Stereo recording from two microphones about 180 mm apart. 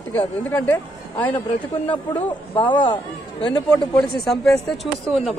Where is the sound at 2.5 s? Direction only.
25° left (ahead or behind).